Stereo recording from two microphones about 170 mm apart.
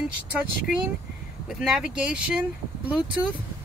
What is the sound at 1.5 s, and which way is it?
Speech, 5° right (ahead or behind).